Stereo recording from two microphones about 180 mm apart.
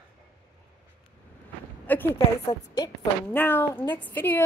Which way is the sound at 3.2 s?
10° left (ahead or behind).